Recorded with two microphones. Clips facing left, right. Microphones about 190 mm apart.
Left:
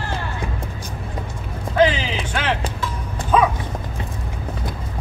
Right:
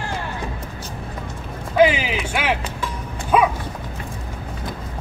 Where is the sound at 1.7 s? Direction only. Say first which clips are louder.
Right 1 dB; 10° right (ahead or behind).